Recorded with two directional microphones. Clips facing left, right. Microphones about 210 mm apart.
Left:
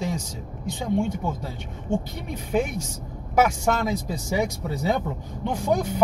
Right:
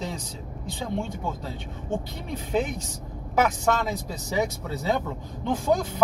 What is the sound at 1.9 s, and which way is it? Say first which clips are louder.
Speech: left 3 dB; 10° left (ahead or behind).